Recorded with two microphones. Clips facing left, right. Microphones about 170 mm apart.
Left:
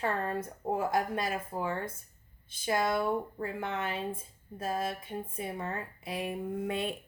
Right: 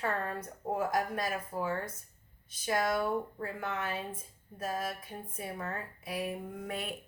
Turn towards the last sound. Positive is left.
turn(degrees=25)  # may be behind; listen again after turning